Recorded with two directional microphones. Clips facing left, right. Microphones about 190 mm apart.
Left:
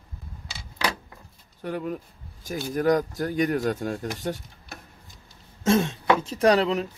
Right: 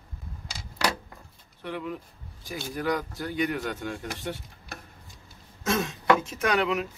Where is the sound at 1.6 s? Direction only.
45° left (ahead or behind).